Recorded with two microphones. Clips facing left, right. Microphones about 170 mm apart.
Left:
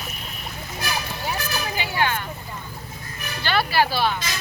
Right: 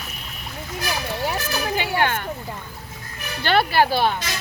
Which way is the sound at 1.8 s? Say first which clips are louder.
Right 2 dB; 60° right (ahead or behind).